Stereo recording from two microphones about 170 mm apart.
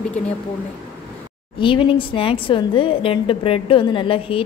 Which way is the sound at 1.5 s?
30° left (ahead or behind).